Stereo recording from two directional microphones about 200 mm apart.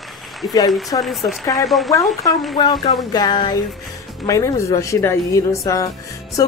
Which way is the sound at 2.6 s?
20° left (ahead or behind).